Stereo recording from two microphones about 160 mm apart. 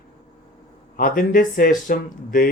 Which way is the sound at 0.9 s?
60° left (ahead or behind).